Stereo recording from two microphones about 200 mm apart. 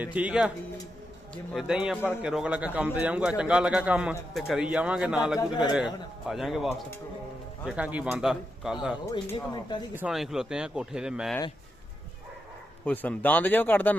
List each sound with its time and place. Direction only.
0.0 s speech: 5° right (ahead or behind)
1.5 s a man's voice: 5° right (ahead or behind)
5.4 s speech: 20° left (ahead or behind)
5.7 s a man's voice: 5° right (ahead or behind)
9.2 s speech: 20° left (ahead or behind)
9.9 s a man's voice: 5° right (ahead or behind)
12.8 s speech: 10° left (ahead or behind)